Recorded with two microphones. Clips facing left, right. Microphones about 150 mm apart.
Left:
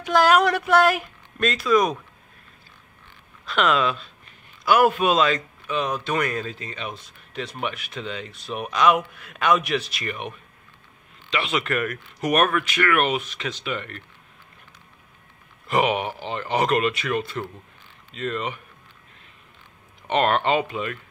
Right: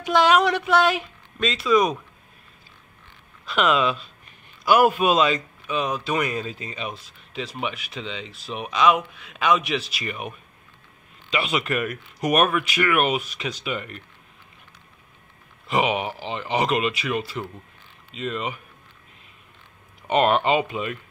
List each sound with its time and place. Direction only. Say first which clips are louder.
0.1 s speech: even; centre (ahead or behind)
3.4 s speech: even; 5° right (ahead or behind)
4.6 s speech: right 1 dB; 15° right (ahead or behind)
11.3 s speech: even; 10° right (ahead or behind)
15.7 s speech: left 1 dB; 5° right (ahead or behind)
20.1 s speech: right 1 dB; 15° right (ahead or behind)